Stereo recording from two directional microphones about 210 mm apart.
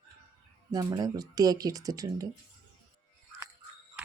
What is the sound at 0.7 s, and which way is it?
Speech, 15° right (ahead or behind).